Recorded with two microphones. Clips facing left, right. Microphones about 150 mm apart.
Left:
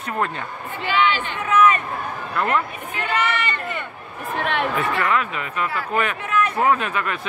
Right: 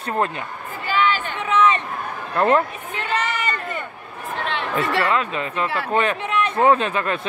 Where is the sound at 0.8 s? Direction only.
40° right (ahead or behind).